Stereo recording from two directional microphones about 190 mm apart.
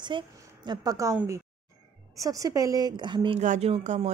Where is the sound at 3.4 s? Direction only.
35° right (ahead or behind).